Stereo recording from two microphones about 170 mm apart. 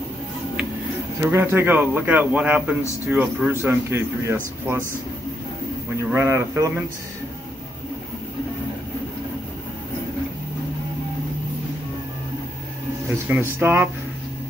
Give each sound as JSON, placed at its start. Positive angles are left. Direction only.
{"t": 1.2, "sound": "speech", "side_deg": -15}
{"t": 6.1, "sound": "speech", "side_deg": -15}
{"t": 13.3, "sound": "speech", "side_deg": -15}